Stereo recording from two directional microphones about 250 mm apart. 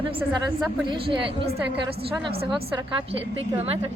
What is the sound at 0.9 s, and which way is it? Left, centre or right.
Speech, centre.